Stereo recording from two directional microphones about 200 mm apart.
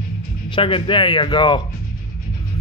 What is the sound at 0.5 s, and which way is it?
A man's voice, 25° left (ahead or behind).